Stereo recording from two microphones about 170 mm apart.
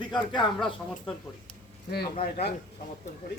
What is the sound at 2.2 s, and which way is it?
Speech, 75° left (ahead or behind).